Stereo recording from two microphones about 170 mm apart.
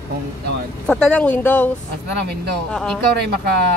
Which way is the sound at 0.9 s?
5° left (ahead or behind).